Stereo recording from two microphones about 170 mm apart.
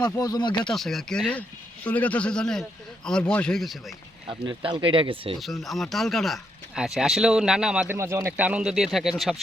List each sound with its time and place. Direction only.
0.0 s speech: 25° left (ahead or behind)
0.7 s speech: centre (ahead or behind)
4.3 s speech: 30° right (ahead or behind)
5.4 s speech: centre (ahead or behind)
7.9 s speech: 15° right (ahead or behind); by 9.4 s centre (ahead or behind)